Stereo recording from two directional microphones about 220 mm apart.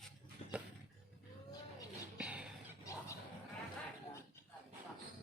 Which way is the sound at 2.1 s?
5° right (ahead or behind).